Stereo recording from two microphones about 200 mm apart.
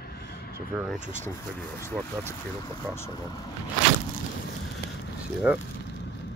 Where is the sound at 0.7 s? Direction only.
5° right (ahead or behind).